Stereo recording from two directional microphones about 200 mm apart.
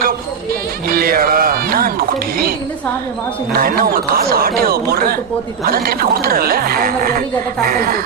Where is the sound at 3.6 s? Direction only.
45° right (ahead or behind).